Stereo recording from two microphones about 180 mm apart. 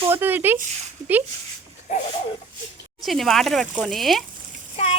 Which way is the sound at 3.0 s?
Centre (ahead or behind).